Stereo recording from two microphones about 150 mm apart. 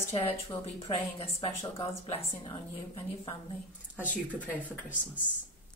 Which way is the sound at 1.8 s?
40° left (ahead or behind).